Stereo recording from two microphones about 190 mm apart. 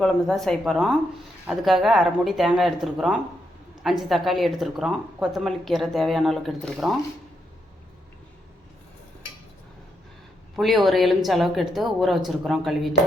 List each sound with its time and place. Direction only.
0.0 s speech: centre (ahead or behind)
10.5 s speech: centre (ahead or behind)